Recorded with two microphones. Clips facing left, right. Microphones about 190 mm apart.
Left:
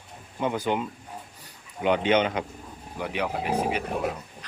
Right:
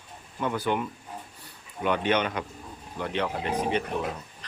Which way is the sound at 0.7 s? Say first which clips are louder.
Even; 20° left (ahead or behind).